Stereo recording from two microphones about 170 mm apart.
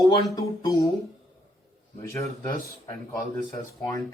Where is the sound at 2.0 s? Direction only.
15° left (ahead or behind).